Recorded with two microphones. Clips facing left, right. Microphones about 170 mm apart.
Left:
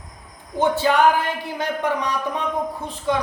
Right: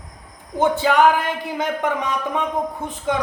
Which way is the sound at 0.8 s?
20° right (ahead or behind).